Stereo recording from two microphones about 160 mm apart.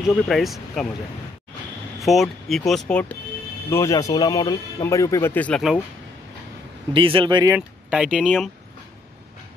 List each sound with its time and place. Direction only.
0.1 s speech: centre (ahead or behind)
2.0 s speech: centre (ahead or behind)
3.7 s speech: 20° left (ahead or behind)
6.9 s speech: 35° right (ahead or behind)
7.5 s speech: 5° right (ahead or behind)